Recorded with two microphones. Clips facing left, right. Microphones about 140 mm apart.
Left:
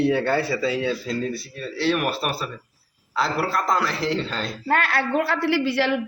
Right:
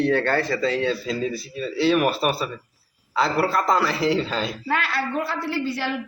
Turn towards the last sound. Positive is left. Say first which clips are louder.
# left 5 dB
turn(degrees=70)  # may be behind; listen again after turning